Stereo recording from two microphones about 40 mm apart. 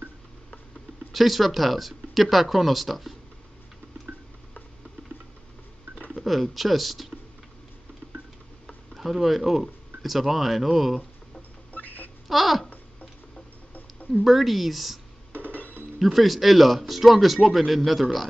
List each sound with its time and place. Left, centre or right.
1.1 s speech: centre
6.2 s speech: centre
8.9 s speech: centre
11.7 s a sound: left
12.3 s babbling: centre
14.2 s speech: centre
15.5 s a sound: left
16.0 s speech: centre